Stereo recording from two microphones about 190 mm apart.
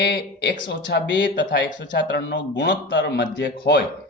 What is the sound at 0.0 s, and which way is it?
Speech, 65° left (ahead or behind).